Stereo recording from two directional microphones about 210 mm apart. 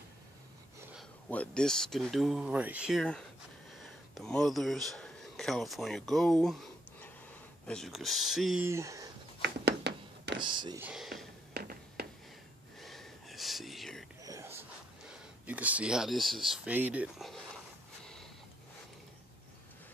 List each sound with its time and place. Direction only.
0.9 s speech: 5° left (ahead or behind)
8.6 s speech: 15° right (ahead or behind)
9.4 s a sound: 55° right (ahead or behind)
10.4 s speech: 20° right (ahead or behind)
10.8 s a sound: 5° right (ahead or behind)
11.5 s music: 50° right (ahead or behind)
12.8 s whispering: centre (ahead or behind)
14.2 s a sound: 15° right (ahead or behind)
15.0 s speech: 5° right (ahead or behind)